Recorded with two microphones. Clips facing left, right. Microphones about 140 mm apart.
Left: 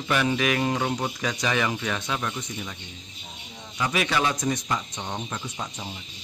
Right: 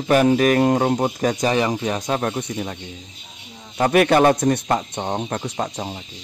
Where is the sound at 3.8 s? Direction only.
55° right (ahead or behind).